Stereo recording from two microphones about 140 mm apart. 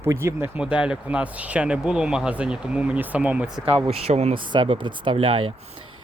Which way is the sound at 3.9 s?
50° right (ahead or behind).